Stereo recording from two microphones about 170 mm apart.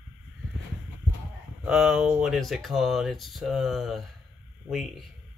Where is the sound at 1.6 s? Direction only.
5° right (ahead or behind).